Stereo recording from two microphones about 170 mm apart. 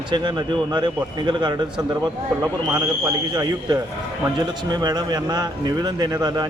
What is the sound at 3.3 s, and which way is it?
Speech, 25° right (ahead or behind).